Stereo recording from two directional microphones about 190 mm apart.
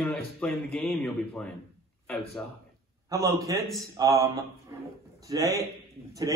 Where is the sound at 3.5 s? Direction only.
20° right (ahead or behind).